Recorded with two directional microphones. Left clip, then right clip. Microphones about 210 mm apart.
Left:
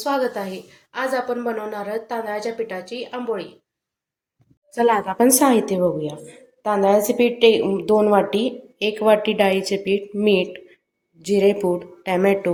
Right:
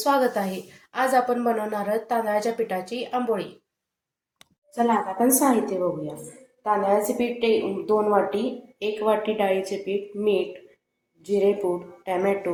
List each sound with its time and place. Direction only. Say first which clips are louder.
0.0 s a woman's voice: right 1 dB; centre (ahead or behind)
4.7 s speech: left 5 dB; 40° left (ahead or behind)
7.2 s speech: left 7 dB; 50° left (ahead or behind)